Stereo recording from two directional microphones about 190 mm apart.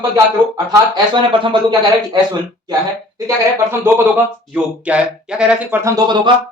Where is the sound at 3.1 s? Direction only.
15° right (ahead or behind).